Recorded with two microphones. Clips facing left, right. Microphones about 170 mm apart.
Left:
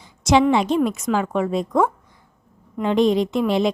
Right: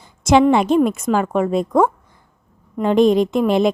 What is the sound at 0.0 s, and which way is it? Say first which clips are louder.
A woman's voice: right 3 dB; 50° right (ahead or behind).